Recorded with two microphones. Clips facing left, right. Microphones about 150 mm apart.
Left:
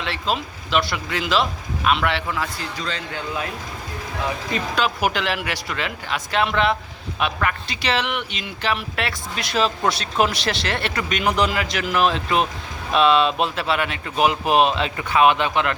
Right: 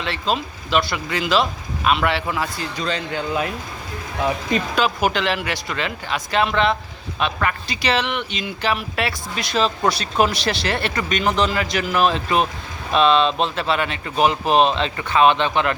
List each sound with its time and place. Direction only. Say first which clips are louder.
0.0 s speech: right 2 dB; centre (ahead or behind)
2.2 s a man's voice: right 2 dB; 20° right (ahead or behind)
4.9 s speech: right 2 dB; 5° left (ahead or behind)